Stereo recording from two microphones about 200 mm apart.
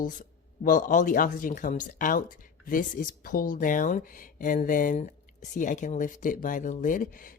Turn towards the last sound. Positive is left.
turn(degrees=40)  # may be behind; listen again after turning